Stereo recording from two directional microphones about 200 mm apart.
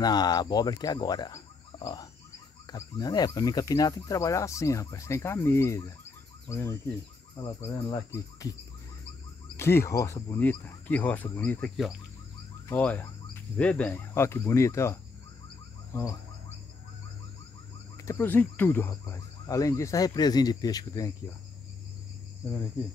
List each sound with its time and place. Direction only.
0.0 s speech: 20° left (ahead or behind)
9.6 s speech: 10° left (ahead or behind)
15.9 s bird: 15° left (ahead or behind)
17.9 s speech: 15° left (ahead or behind)